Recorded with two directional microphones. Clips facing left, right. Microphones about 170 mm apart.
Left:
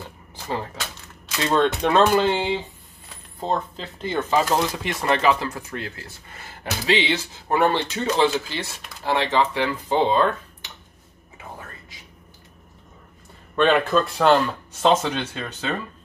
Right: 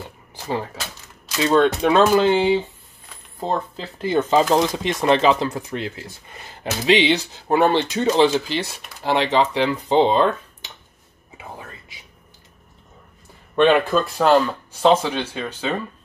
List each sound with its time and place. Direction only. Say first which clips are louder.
1.4 s speech: right 4 dB; 5° right (ahead or behind)
4.2 s speech: right 4 dB; 20° right (ahead or behind)
13.7 s speech: right 1 dB; 5° right (ahead or behind)